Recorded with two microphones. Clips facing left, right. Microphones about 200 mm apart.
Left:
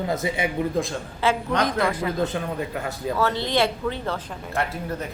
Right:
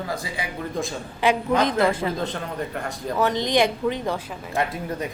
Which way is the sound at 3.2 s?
15° right (ahead or behind).